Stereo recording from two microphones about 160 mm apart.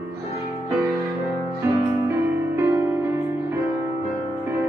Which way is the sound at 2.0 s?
15° right (ahead or behind).